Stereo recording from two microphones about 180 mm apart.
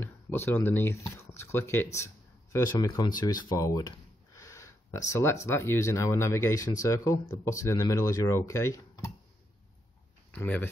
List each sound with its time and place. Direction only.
0.0 s speech: 10° left (ahead or behind)
10.3 s speech: 10° left (ahead or behind)